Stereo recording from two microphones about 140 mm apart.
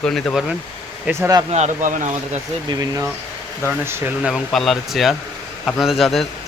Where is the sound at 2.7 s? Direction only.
25° right (ahead or behind).